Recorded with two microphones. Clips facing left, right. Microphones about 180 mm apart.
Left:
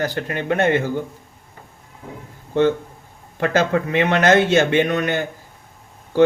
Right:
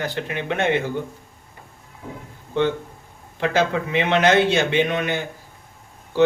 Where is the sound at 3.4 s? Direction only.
50° left (ahead or behind).